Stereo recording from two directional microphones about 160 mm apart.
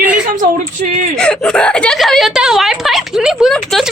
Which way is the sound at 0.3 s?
55° right (ahead or behind).